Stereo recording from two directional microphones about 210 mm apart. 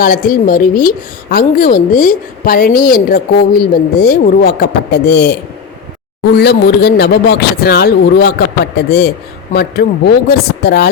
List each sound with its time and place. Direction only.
0.0 s a woman's voice: 45° left (ahead or behind)
9.5 s a woman's voice: 50° left (ahead or behind)